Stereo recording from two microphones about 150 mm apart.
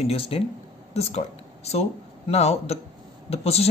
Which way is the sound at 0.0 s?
40° left (ahead or behind).